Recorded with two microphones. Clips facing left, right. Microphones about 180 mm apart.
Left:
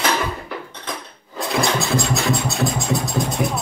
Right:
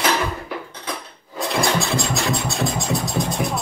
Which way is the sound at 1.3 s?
Centre (ahead or behind).